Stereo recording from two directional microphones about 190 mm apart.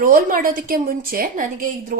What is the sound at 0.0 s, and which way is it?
A woman's voice, 50° right (ahead or behind).